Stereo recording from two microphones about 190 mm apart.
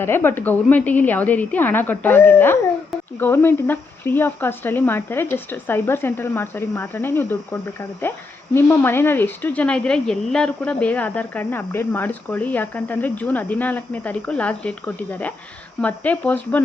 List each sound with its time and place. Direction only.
0.0 s speech: 10° left (ahead or behind)